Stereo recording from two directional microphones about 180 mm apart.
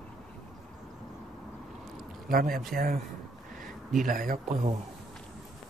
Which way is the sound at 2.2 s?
55° right (ahead or behind).